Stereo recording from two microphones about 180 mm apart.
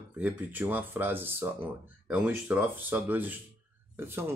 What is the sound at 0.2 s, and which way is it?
Speech, 10° right (ahead or behind).